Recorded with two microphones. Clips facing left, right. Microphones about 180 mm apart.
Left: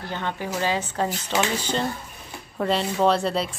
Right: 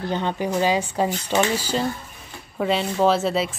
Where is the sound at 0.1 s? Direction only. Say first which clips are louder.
Right 4 dB; 20° right (ahead or behind).